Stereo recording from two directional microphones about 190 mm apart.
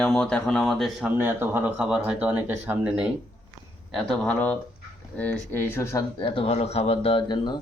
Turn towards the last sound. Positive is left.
turn(degrees=25)  # may be behind; listen again after turning